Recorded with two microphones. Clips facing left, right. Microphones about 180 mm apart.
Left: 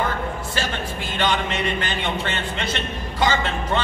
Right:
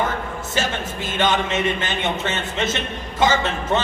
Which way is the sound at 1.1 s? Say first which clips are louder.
Right 3 dB; 20° right (ahead or behind).